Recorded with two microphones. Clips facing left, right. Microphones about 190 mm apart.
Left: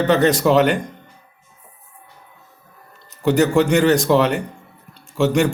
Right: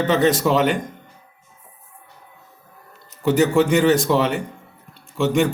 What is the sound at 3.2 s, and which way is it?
A man's voice, centre (ahead or behind).